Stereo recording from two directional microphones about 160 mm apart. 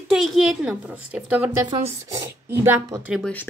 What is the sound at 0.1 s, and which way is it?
A child's voice, centre (ahead or behind).